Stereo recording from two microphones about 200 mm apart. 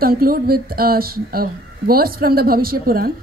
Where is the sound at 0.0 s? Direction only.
45° right (ahead or behind).